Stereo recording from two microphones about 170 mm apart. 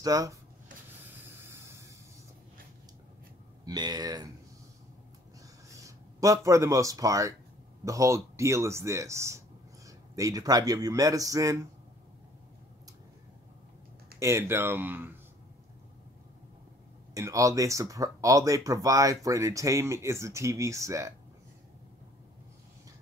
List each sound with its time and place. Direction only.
0.0 s speech: 20° right (ahead or behind)
1.4 s hiss: 15° right (ahead or behind)
3.6 s speech: 25° right (ahead or behind)
5.7 s speech: 20° right (ahead or behind)
14.2 s speech: 15° right (ahead or behind)
17.1 s speech: 20° right (ahead or behind)